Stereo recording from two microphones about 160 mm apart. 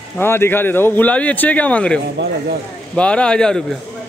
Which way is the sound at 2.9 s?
5° left (ahead or behind).